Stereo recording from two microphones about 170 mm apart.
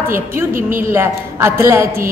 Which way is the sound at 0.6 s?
55° right (ahead or behind).